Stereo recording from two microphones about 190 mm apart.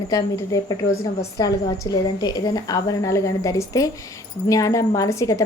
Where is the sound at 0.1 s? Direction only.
20° left (ahead or behind).